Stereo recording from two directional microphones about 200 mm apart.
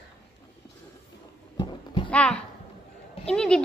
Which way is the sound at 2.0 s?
5° left (ahead or behind).